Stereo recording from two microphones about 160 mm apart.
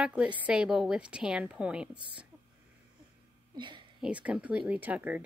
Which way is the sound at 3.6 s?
30° right (ahead or behind).